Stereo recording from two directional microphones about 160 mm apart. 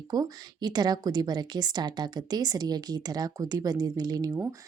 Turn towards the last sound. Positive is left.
turn(degrees=-20)  # may be behind; listen again after turning